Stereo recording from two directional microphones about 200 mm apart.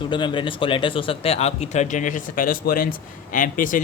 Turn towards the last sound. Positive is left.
turn(degrees=40)  # may be behind; listen again after turning